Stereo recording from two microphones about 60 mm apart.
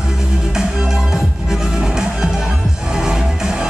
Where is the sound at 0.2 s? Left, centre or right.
Centre.